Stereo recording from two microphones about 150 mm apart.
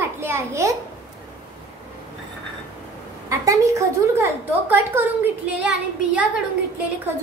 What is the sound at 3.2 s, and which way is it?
A woman's voice, 20° right (ahead or behind).